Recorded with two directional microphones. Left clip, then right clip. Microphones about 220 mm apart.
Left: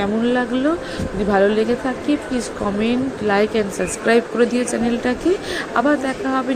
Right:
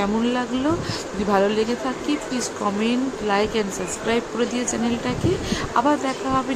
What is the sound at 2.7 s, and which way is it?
Speech, 10° left (ahead or behind).